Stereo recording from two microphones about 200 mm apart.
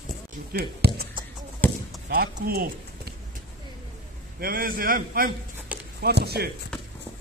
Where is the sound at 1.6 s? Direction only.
10° left (ahead or behind).